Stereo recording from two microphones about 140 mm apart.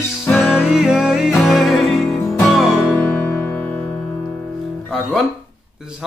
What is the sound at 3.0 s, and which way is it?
Music, 10° left (ahead or behind).